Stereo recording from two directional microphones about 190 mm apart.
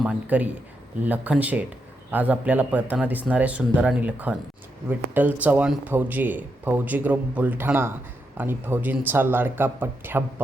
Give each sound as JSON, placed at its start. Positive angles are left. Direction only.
{"t": 0.0, "sound": "speech", "side_deg": -5}